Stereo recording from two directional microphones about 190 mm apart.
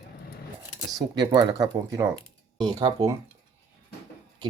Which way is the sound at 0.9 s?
20° right (ahead or behind).